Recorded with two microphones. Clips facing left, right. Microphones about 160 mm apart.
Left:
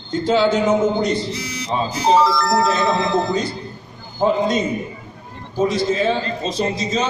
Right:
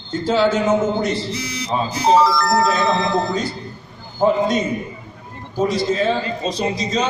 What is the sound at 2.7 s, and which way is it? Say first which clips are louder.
Speech: even; centre (ahead or behind).